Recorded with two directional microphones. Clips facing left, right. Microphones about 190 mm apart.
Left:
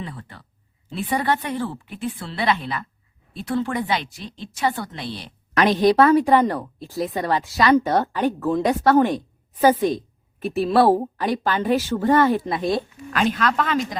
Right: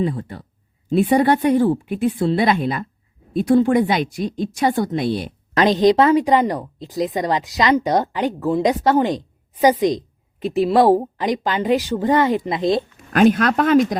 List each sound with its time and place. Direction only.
0.1 s a woman's voice: 45° right (ahead or behind)
5.8 s a woman's voice: 20° right (ahead or behind)
13.1 s a woman's voice: 50° right (ahead or behind)